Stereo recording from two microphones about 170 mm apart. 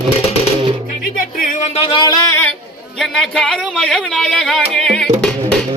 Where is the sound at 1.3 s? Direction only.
50° left (ahead or behind).